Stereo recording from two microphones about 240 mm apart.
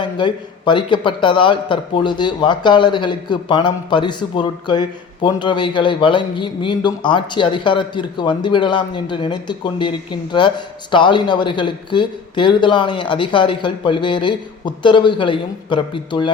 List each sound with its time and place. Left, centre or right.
0.0 s a man's voice: centre